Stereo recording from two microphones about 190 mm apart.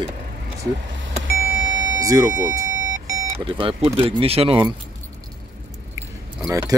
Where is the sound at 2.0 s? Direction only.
20° right (ahead or behind).